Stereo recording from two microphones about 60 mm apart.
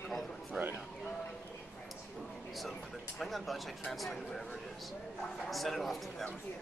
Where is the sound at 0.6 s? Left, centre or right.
Centre.